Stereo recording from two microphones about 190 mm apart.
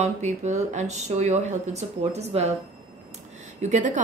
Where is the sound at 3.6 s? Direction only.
40° right (ahead or behind).